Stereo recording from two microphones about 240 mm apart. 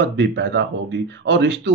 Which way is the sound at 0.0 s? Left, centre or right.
Right.